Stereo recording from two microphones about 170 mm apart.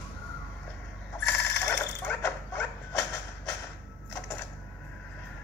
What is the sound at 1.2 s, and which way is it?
Jackhammer, 15° left (ahead or behind).